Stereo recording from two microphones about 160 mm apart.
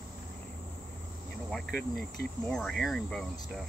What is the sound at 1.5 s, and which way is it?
Speech, centre (ahead or behind).